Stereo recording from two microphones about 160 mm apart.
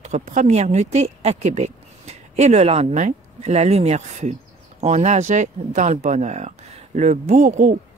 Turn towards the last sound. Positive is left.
turn(degrees=-55)  # may be behind; listen again after turning